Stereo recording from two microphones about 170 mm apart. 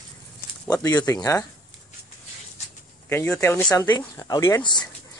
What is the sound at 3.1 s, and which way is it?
Speech, 15° left (ahead or behind).